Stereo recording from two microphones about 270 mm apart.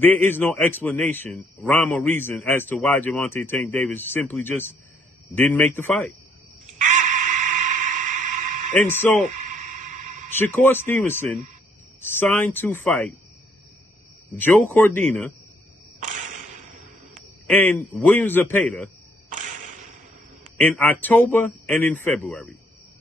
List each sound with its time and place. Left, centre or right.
0.0 s a man's voice: centre
6.8 s a sound: right
8.7 s a man's voice: centre
9.4 s a sound: right
10.3 s a man's voice: centre
14.3 s a man's voice: centre
16.0 s whip: right
17.5 s a man's voice: centre
19.2 s a sound: right
20.5 s a man's voice: centre